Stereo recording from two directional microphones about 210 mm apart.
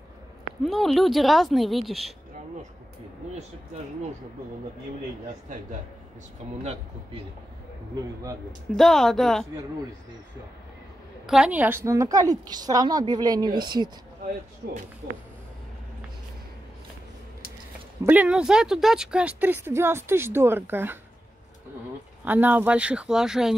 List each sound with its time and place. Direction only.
0.7 s a woman's voice: centre (ahead or behind)
8.7 s a woman's voice: centre (ahead or behind)
11.2 s speech: 5° right (ahead or behind); by 13.8 s 20° right (ahead or behind)
18.0 s speech: 5° right (ahead or behind)
22.2 s a woman's voice: 10° right (ahead or behind)